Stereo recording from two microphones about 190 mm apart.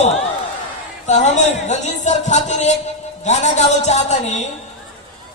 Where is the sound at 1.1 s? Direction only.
40° left (ahead or behind).